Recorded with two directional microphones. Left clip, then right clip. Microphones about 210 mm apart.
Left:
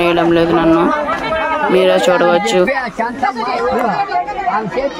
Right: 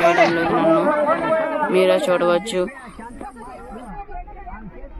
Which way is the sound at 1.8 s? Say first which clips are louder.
Left 5 dB; 35° left (ahead or behind).